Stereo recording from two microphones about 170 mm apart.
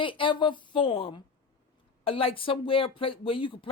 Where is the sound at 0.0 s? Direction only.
30° left (ahead or behind).